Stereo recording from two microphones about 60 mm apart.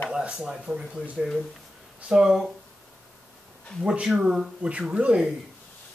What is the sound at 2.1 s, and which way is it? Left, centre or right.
Speech, centre.